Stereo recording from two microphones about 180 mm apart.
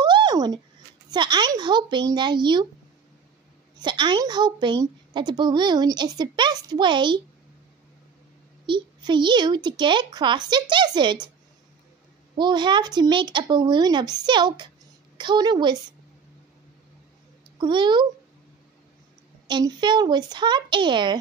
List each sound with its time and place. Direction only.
0.0 s a sound: 25° right (ahead or behind)
1.1 s a woman's voice: 25° right (ahead or behind)
3.7 s a woman's voice: 25° right (ahead or behind)
8.6 s a woman's voice: 25° right (ahead or behind)
12.4 s a woman's voice: 25° right (ahead or behind)
17.6 s a woman's voice: 25° right (ahead or behind)
19.4 s a woman's voice: 25° right (ahead or behind)